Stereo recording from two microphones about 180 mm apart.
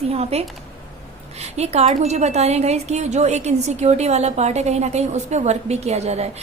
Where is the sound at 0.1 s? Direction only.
35° right (ahead or behind).